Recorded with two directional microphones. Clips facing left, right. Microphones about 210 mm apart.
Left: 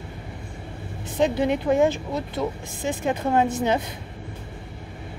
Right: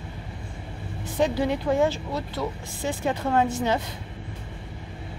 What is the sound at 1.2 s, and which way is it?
A woman's voice, 20° left (ahead or behind).